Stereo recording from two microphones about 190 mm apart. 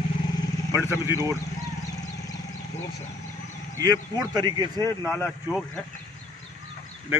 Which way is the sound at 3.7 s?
20° right (ahead or behind).